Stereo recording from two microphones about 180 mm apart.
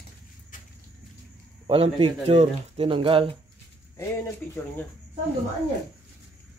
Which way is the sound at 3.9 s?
15° left (ahead or behind).